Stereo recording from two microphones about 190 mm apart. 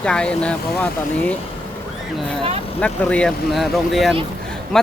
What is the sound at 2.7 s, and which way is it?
Speech, 5° left (ahead or behind).